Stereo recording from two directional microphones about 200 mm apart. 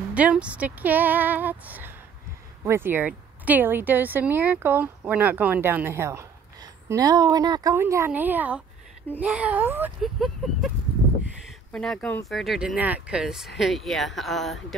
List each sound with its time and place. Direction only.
0.1 s speech: 5° right (ahead or behind)
11.7 s speech: 5° left (ahead or behind)